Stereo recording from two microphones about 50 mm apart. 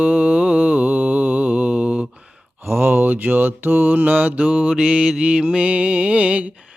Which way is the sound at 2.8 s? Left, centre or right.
Right.